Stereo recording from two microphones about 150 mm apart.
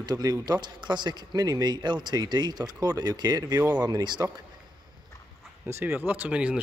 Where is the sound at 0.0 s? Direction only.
25° right (ahead or behind).